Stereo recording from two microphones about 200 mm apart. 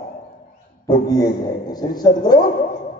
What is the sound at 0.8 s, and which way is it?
A man's voice, 20° left (ahead or behind).